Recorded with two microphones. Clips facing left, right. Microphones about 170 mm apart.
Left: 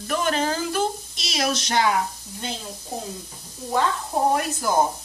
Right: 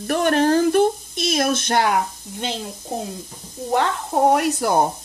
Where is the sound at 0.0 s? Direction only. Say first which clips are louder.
Right 6 dB; 60° right (ahead or behind).